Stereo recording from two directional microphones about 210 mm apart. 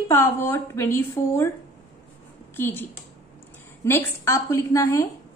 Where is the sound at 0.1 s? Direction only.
10° left (ahead or behind).